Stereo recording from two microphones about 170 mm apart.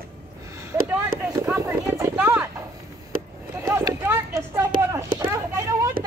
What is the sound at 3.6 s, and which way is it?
Clip-clop, 15° right (ahead or behind).